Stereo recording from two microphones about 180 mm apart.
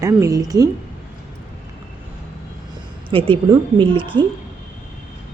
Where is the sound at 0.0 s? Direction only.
15° right (ahead or behind).